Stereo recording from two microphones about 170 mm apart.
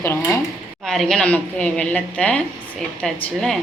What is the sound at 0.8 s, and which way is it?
A woman's voice, centre (ahead or behind).